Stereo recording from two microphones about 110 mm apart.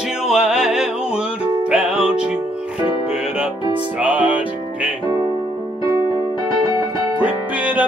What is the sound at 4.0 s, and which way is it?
Music, 15° right (ahead or behind).